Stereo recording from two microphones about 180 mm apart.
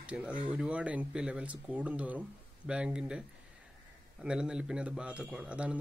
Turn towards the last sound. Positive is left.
turn(degrees=-5)  # may be behind; listen again after turning